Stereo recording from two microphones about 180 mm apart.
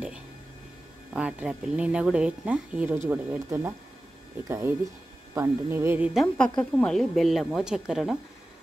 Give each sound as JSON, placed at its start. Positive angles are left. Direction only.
{"t": 1.1, "sound": "speech", "side_deg": -5}
{"t": 6.2, "sound": "a woman's voice", "side_deg": 5}